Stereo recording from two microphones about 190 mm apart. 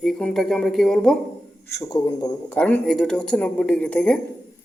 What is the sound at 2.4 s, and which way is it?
A man's voice, 10° left (ahead or behind).